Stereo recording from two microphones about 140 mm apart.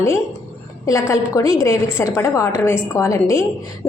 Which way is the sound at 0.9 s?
20° left (ahead or behind).